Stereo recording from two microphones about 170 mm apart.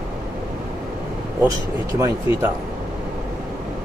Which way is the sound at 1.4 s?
20° right (ahead or behind).